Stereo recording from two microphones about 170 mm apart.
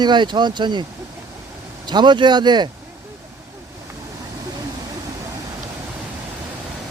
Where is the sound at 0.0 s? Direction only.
25° right (ahead or behind).